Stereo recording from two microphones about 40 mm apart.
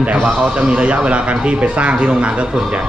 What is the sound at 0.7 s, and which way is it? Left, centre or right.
A man's voice, right.